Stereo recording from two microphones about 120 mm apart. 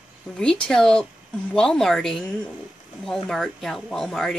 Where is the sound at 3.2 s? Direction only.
5° left (ahead or behind).